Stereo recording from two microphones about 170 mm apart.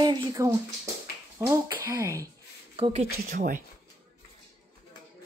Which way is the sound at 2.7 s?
40° right (ahead or behind).